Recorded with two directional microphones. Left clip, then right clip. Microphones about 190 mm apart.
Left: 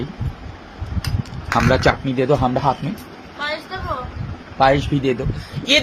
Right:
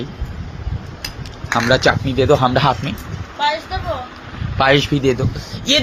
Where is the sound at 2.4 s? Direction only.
5° right (ahead or behind).